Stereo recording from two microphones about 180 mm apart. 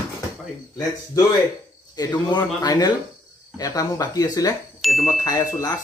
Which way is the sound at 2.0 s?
20° left (ahead or behind).